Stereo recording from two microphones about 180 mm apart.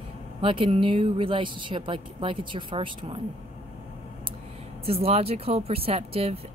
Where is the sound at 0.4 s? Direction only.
30° right (ahead or behind).